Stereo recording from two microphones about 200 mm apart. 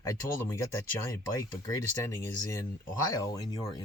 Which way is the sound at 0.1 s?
15° left (ahead or behind).